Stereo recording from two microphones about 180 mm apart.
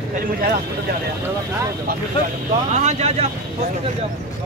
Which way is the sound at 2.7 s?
40° right (ahead or behind).